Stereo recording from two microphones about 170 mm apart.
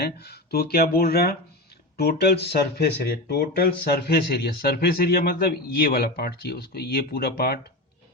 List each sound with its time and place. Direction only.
0.0 s speech: 70° left (ahead or behind)